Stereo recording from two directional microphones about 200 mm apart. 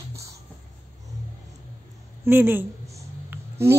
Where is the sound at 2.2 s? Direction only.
10° right (ahead or behind).